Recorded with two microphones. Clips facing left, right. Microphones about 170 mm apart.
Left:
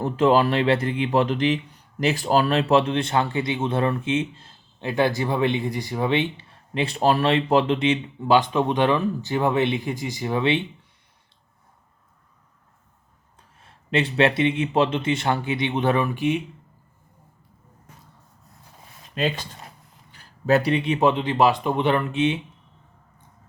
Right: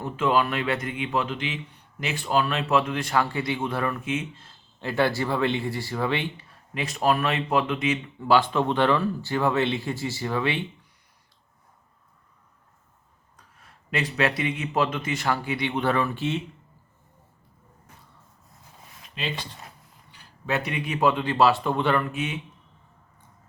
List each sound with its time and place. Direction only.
0.0 s speech: 35° left (ahead or behind); by 6.2 s 20° left (ahead or behind)
6.7 s speech: 30° left (ahead or behind)
8.2 s speech: 20° left (ahead or behind)
13.6 s speech: 25° left (ahead or behind)
19.1 s speech: 45° left (ahead or behind); by 22.4 s 25° left (ahead or behind)